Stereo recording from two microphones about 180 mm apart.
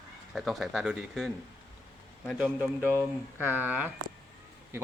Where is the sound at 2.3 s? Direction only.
10° right (ahead or behind).